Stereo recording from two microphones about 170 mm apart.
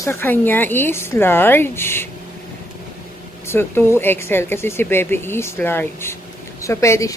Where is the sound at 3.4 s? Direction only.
15° left (ahead or behind).